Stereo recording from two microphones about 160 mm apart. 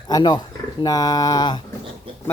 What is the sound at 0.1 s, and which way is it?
Speech, 25° left (ahead or behind).